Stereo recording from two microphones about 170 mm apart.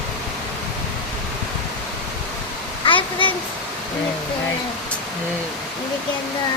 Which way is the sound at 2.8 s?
30° left (ahead or behind).